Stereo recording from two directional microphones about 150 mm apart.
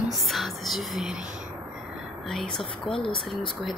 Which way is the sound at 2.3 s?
Centre (ahead or behind).